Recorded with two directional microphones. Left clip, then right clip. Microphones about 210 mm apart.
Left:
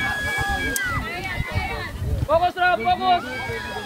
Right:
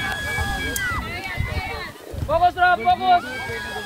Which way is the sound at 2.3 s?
55° left (ahead or behind).